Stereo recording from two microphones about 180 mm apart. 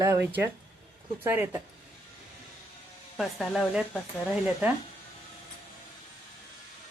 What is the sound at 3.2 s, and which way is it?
Speech, centre (ahead or behind).